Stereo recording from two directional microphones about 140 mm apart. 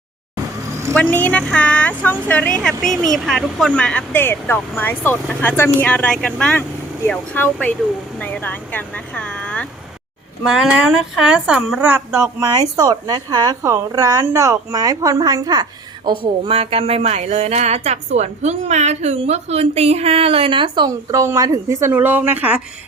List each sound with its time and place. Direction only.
0.9 s speech: 10° left (ahead or behind)
10.4 s speech: 5° right (ahead or behind); by 15.6 s 30° right (ahead or behind)
16.0 s speech: 40° right (ahead or behind); by 22.6 s 10° right (ahead or behind)